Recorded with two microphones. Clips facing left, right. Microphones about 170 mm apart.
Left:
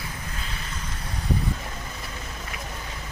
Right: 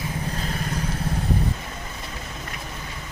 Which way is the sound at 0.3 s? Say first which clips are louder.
Right 8 dB; 45° right (ahead or behind).